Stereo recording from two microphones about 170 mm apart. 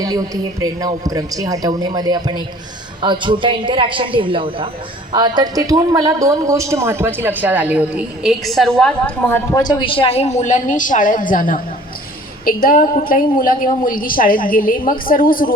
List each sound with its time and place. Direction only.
0.6 s a man's voice: 20° right (ahead or behind); by 15.5 s 55° left (ahead or behind)